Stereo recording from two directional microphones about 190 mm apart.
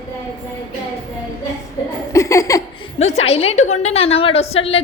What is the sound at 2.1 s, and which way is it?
Laughter, 15° left (ahead or behind).